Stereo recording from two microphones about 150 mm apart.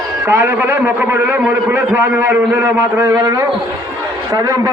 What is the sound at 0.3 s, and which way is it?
A man's voice, 15° right (ahead or behind).